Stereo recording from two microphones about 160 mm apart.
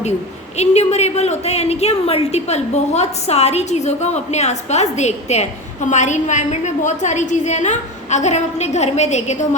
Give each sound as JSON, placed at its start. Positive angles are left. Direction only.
{"t": 0.5, "sound": "a woman's voice", "side_deg": 45}